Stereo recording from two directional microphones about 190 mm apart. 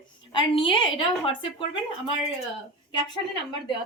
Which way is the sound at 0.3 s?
25° left (ahead or behind).